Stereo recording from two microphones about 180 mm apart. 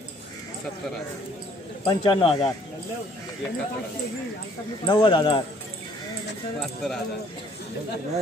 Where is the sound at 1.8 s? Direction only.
30° left (ahead or behind).